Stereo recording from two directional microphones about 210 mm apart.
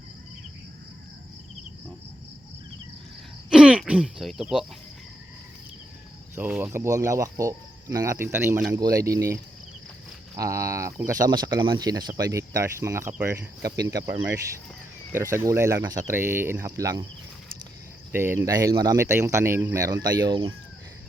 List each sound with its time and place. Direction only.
3.5 s throat clearing: 5° right (ahead or behind)
6.3 s speech: 10° right (ahead or behind)
15.1 s speech: 15° right (ahead or behind)
18.1 s speech: 10° right (ahead or behind)